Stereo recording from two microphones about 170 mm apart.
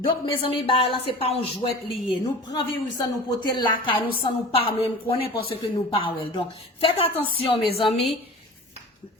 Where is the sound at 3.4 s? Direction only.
25° left (ahead or behind).